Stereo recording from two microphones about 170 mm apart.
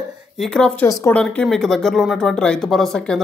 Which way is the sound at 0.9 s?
20° left (ahead or behind).